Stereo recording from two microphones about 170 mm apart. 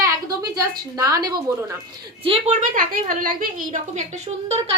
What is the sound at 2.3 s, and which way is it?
A woman's voice, 40° right (ahead or behind).